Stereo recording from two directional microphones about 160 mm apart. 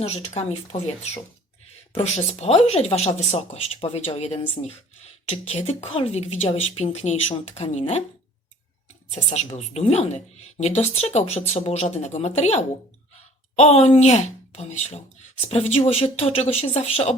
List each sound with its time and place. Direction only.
0.0 s speech: 40° left (ahead or behind)
9.1 s speech: 45° left (ahead or behind)